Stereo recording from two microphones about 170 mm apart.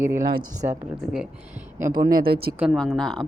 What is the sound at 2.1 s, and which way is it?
Speech, 65° right (ahead or behind).